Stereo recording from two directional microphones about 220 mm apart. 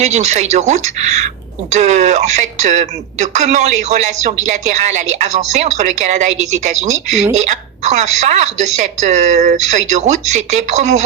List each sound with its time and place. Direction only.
0.0 s a woman's voice: 30° right (ahead or behind)